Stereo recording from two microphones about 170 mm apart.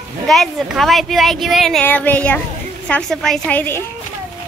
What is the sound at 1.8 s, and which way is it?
A woman's voice, 10° left (ahead or behind).